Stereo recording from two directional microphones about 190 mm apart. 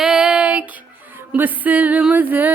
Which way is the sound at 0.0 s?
5° right (ahead or behind).